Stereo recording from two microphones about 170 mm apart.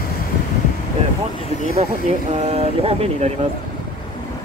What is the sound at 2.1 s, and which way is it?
Speech, 35° right (ahead or behind).